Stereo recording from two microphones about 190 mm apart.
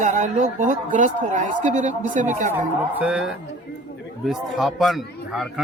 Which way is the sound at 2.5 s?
5° right (ahead or behind).